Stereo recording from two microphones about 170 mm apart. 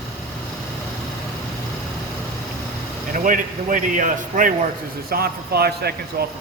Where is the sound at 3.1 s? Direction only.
50° right (ahead or behind).